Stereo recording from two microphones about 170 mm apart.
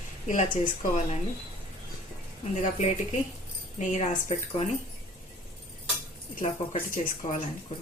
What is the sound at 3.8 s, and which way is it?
Speech, 45° left (ahead or behind).